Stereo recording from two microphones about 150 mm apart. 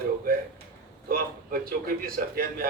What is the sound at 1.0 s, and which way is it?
A man's voice, 75° right (ahead or behind).